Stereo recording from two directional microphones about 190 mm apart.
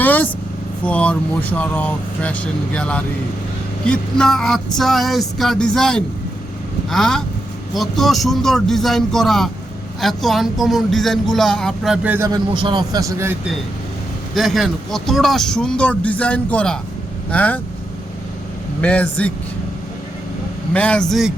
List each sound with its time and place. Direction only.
0.0 s vehicle: 10° left (ahead or behind)
0.9 s speech: 5° left (ahead or behind); by 12.4 s 10° right (ahead or behind)
12.5 s speech: 25° right (ahead or behind)
14.3 s speech: centre (ahead or behind)
18.8 s speech: 5° left (ahead or behind)
20.7 s speech: 5° left (ahead or behind)